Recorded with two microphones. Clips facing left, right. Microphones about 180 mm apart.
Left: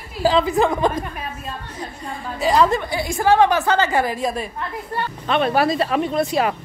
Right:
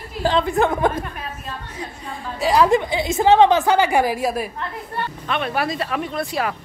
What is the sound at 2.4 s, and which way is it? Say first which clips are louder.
Speech: even; centre (ahead or behind).